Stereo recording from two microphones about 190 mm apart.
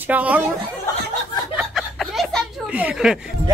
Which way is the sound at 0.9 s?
15° left (ahead or behind).